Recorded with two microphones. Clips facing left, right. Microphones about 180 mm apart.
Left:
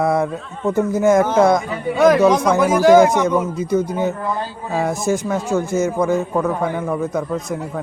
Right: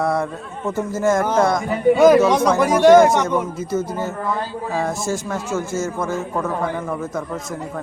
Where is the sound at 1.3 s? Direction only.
Centre (ahead or behind).